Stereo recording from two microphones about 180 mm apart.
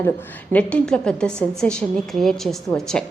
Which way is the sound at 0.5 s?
5° left (ahead or behind).